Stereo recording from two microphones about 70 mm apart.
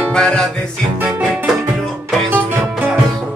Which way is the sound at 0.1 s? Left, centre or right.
Centre.